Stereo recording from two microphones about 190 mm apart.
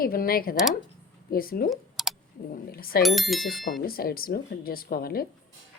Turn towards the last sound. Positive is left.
turn(degrees=50)  # may be behind; listen again after turning